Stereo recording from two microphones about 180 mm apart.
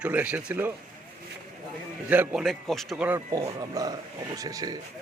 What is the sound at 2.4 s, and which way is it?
Speech, centre (ahead or behind).